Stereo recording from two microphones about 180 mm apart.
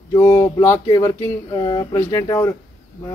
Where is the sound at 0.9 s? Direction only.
25° left (ahead or behind).